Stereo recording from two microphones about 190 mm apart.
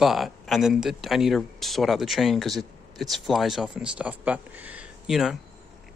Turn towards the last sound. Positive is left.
turn(degrees=0)  # may be behind; listen again after turning